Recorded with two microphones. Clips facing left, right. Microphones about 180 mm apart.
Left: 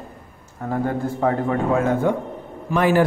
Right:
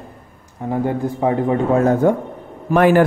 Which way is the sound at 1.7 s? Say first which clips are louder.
Right 6 dB; 40° right (ahead or behind).